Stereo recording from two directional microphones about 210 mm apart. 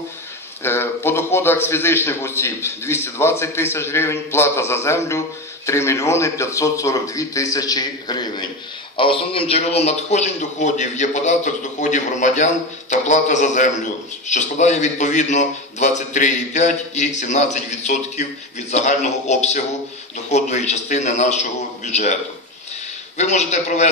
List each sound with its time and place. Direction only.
0.6 s a man's voice: 10° left (ahead or behind); by 23.9 s 35° left (ahead or behind)